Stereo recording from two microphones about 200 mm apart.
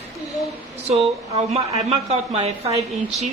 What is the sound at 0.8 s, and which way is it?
Speech, 30° right (ahead or behind).